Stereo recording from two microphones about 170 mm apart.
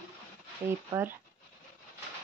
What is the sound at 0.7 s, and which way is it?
Speech, 15° right (ahead or behind).